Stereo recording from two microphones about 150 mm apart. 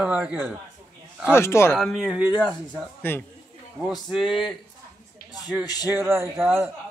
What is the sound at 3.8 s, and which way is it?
Speech, centre (ahead or behind).